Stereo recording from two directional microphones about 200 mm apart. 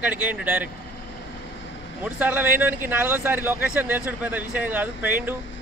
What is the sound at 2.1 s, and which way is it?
A man's voice, 5° right (ahead or behind).